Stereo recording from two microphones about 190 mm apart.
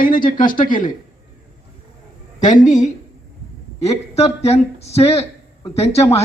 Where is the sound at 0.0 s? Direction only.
45° left (ahead or behind).